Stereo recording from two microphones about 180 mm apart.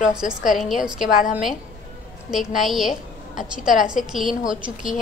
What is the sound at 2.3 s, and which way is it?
A woman's voice, centre (ahead or behind).